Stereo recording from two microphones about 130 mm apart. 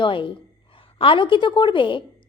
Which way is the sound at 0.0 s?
40° left (ahead or behind).